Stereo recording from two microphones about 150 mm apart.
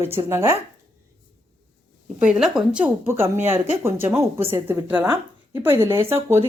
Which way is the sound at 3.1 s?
15° right (ahead or behind).